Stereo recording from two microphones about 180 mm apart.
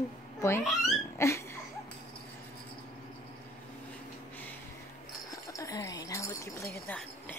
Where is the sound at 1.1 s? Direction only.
15° left (ahead or behind).